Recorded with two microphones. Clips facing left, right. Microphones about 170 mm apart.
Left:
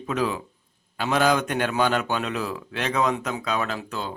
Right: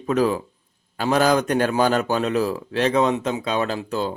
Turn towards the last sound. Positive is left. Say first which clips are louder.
# right 6 dB
turn(degrees=-35)  # may be behind; listen again after turning